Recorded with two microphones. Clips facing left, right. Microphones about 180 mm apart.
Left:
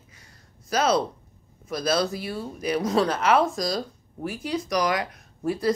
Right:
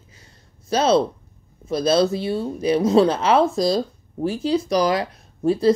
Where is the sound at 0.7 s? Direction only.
30° right (ahead or behind).